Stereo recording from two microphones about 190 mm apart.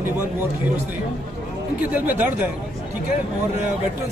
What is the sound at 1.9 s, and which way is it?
Speech, 10° right (ahead or behind).